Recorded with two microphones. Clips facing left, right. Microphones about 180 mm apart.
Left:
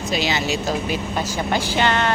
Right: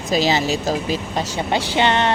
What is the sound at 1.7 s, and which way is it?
Speech, 25° right (ahead or behind).